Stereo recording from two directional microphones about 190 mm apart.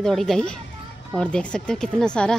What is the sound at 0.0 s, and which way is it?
A woman's voice, centre (ahead or behind).